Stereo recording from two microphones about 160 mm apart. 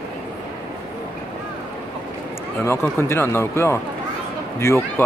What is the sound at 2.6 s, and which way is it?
Speech, 15° left (ahead or behind).